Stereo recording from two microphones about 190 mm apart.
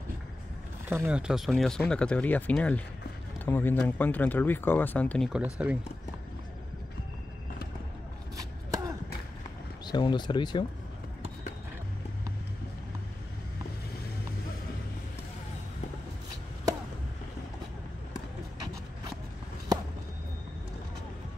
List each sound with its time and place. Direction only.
0.8 s speech: 10° right (ahead or behind); by 5.3 s 5° left (ahead or behind)
5.3 s speech: 5° right (ahead or behind)
9.8 s speech: 25° left (ahead or behind)